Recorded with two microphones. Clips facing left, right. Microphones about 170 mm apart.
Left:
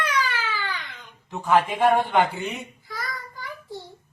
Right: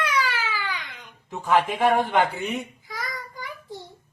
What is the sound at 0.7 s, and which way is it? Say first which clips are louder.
Babbling: even; 15° right (ahead or behind).